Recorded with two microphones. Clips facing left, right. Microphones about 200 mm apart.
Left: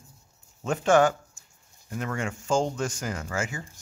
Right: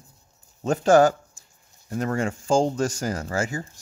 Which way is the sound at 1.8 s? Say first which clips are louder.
Right 6 dB; 35° right (ahead or behind).